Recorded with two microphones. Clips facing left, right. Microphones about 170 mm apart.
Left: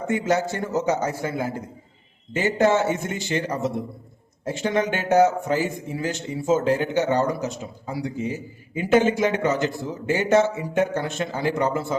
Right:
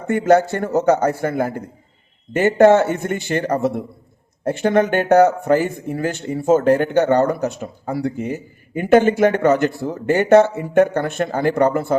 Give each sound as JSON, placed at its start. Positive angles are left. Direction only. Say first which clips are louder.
{"t": 0.1, "sound": "speech", "louder": "right 8 dB", "side_deg": -60}